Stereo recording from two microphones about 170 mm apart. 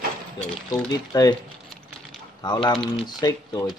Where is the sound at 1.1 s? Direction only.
25° left (ahead or behind).